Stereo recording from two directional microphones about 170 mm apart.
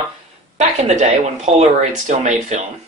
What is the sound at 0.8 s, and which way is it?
Speech, 45° right (ahead or behind).